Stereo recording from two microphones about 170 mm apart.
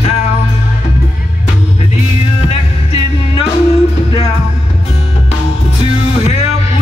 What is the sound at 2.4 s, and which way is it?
Music, 40° left (ahead or behind).